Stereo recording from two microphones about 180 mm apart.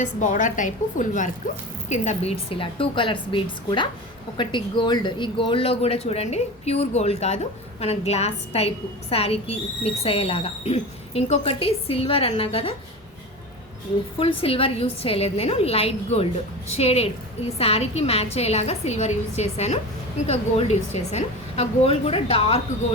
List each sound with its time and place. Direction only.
0.0 s a woman's voice: 45° left (ahead or behind)
14.2 s speech: 30° left (ahead or behind)